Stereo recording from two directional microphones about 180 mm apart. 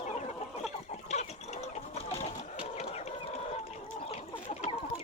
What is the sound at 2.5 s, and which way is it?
Chicken, 35° left (ahead or behind).